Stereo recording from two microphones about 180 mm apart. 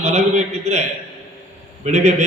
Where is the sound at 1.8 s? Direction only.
40° right (ahead or behind).